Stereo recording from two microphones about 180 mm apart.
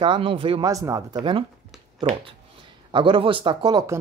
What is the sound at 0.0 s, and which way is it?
Speech, 30° right (ahead or behind).